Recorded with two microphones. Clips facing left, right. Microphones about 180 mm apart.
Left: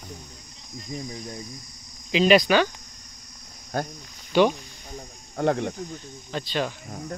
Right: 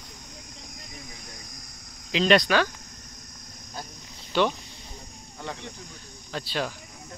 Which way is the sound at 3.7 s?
60° left (ahead or behind).